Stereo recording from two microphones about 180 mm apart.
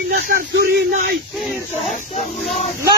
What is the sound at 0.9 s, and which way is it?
Speech, 55° right (ahead or behind).